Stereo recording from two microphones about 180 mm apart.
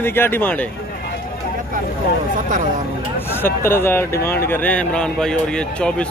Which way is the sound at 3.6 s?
15° left (ahead or behind).